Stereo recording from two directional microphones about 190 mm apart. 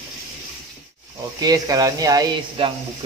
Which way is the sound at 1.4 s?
20° right (ahead or behind).